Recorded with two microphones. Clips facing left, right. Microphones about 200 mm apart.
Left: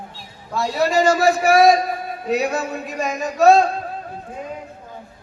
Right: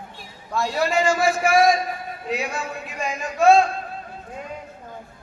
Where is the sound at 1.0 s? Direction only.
40° left (ahead or behind).